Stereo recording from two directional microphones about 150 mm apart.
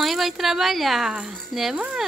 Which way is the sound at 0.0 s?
Centre (ahead or behind).